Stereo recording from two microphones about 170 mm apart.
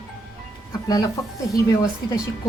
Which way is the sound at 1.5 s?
20° left (ahead or behind).